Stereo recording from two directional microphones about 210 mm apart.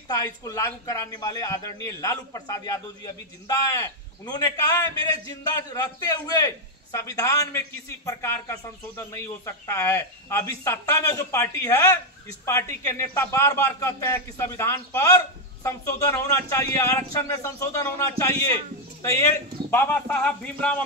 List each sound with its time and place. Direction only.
0.1 s a man's voice: 15° left (ahead or behind)
19.7 s a man's voice: 10° left (ahead or behind)